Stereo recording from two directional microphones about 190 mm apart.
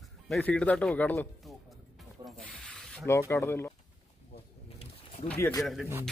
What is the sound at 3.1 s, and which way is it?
Speech, 15° left (ahead or behind).